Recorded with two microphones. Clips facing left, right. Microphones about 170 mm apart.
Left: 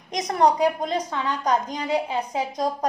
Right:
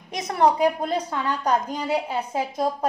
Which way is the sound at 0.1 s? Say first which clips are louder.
Even; 5° right (ahead or behind).